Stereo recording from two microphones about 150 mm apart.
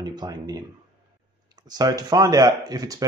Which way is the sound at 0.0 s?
25° right (ahead or behind).